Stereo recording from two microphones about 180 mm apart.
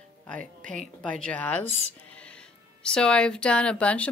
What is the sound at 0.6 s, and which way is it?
Speech, 45° right (ahead or behind).